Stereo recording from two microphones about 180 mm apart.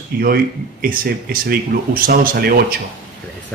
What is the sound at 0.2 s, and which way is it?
Speech, 55° right (ahead or behind).